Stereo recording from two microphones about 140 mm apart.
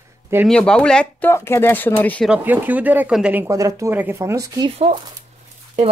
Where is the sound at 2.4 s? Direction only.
10° right (ahead or behind).